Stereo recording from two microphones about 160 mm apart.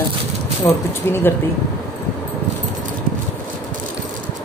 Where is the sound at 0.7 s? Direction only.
20° left (ahead or behind).